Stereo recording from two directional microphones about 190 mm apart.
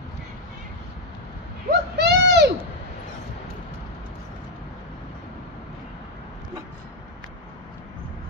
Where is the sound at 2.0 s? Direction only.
60° right (ahead or behind).